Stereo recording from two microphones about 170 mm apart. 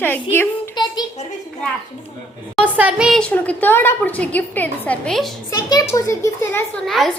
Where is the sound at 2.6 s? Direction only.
10° right (ahead or behind).